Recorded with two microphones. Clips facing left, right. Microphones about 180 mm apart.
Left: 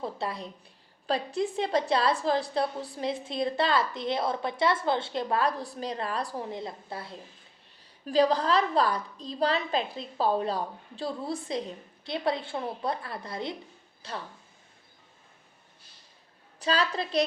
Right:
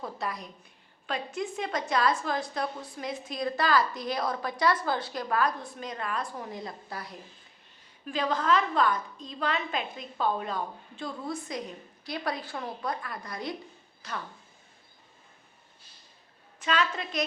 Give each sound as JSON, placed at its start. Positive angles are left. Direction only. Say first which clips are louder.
{"t": 0.0, "sound": "a woman's voice", "louder": "left 2 dB", "side_deg": 30}
{"t": 16.6, "sound": "a woman's voice", "louder": "left 1 dB", "side_deg": 35}